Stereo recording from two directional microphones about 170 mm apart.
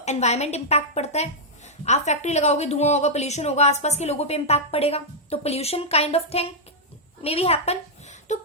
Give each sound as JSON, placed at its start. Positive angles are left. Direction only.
{"t": 0.0, "sound": "a woman's voice", "side_deg": 40}